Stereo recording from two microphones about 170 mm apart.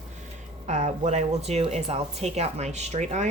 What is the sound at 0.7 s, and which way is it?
Speech, 45° right (ahead or behind).